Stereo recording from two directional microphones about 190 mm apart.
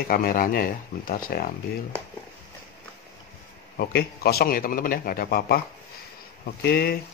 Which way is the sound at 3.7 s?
55° left (ahead or behind).